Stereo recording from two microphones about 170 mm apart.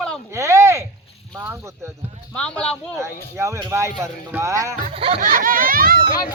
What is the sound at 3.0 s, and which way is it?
Speech, 15° right (ahead or behind).